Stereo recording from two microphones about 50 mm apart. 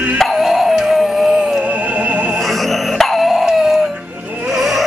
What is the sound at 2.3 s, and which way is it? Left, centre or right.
Dog, centre.